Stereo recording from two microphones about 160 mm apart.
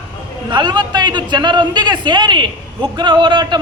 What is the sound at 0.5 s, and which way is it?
A man's voice, 30° right (ahead or behind).